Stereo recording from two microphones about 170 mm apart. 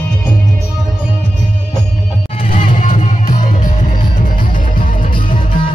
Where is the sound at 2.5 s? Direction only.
50° left (ahead or behind).